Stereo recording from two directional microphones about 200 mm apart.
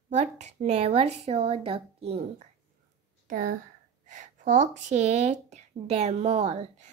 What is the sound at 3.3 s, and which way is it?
Speech, 45° right (ahead or behind).